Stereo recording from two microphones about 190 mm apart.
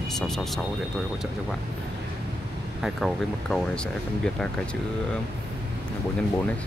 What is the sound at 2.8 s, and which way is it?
Speech, centre (ahead or behind).